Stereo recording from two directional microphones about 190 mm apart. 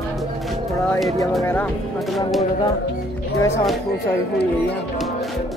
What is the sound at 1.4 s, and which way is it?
Speech, 10° left (ahead or behind).